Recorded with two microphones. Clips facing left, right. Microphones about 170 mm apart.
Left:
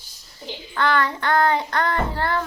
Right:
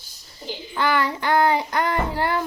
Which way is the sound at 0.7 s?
10° right (ahead or behind).